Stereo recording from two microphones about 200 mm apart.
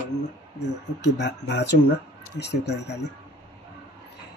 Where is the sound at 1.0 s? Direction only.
60° left (ahead or behind).